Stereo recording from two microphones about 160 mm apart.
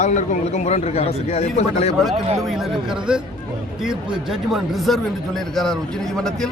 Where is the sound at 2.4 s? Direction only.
Centre (ahead or behind).